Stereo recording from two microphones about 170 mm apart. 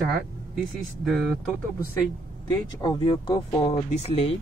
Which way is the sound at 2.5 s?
25° left (ahead or behind).